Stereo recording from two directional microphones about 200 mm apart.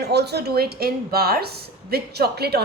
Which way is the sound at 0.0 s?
55° right (ahead or behind).